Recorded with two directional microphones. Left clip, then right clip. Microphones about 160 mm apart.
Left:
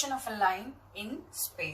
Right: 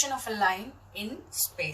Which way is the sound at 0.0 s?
20° right (ahead or behind).